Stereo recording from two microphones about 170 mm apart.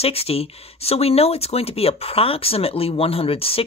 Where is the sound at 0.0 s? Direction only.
35° left (ahead or behind).